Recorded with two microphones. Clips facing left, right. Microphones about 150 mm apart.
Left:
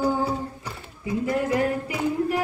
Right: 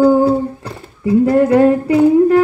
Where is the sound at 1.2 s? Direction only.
70° right (ahead or behind).